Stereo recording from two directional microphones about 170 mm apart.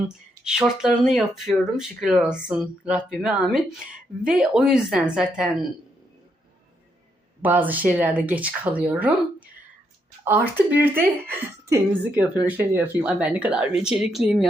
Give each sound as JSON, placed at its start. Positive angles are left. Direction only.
{"t": 0.4, "sound": "speech", "side_deg": -5}
{"t": 7.4, "sound": "speech", "side_deg": -10}
{"t": 10.2, "sound": "speech", "side_deg": -10}